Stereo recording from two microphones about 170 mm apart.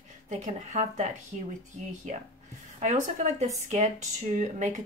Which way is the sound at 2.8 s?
45° right (ahead or behind).